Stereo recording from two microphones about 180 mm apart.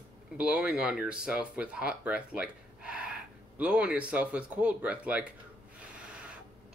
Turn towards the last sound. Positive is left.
turn(degrees=-5)  # may be behind; listen again after turning